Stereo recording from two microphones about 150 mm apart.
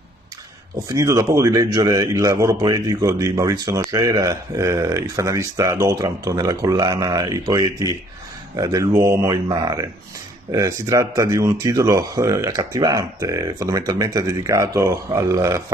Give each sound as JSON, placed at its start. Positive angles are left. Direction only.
{"t": 0.8, "sound": "a man's voice", "side_deg": -20}